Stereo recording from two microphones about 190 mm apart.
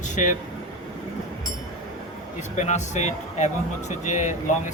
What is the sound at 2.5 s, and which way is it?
Speech, 40° left (ahead or behind).